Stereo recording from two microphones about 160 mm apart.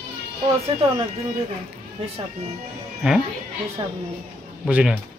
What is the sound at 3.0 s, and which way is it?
Speech, 5° right (ahead or behind).